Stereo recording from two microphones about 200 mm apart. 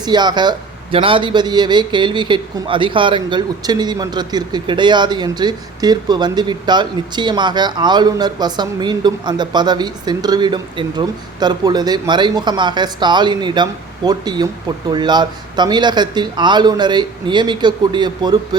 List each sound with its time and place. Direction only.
0.0 s a man's voice: 20° right (ahead or behind)